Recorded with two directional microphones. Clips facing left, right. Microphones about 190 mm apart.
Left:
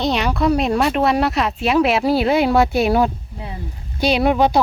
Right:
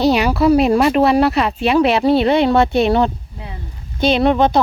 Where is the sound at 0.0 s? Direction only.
5° right (ahead or behind).